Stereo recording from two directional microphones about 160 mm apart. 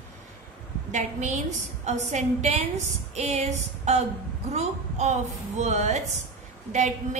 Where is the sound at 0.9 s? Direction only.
50° right (ahead or behind).